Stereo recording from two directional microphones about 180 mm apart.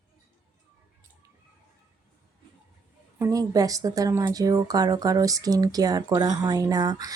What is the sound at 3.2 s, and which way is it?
Speech, 20° right (ahead or behind).